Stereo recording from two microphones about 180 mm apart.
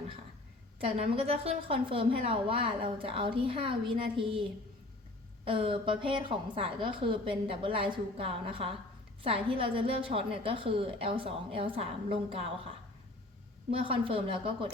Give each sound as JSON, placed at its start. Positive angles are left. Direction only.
{"t": 0.8, "sound": "a woman's voice", "side_deg": -30}
{"t": 5.5, "sound": "a woman's voice", "side_deg": -30}
{"t": 13.7, "sound": "a woman's voice", "side_deg": -30}